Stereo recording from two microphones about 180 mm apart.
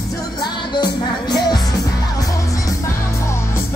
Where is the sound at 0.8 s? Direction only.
20° left (ahead or behind).